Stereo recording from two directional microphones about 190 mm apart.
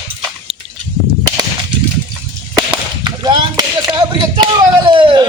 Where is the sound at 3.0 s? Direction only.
20° right (ahead or behind).